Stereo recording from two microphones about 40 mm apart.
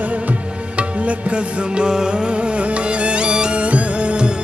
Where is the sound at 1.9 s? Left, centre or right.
Centre.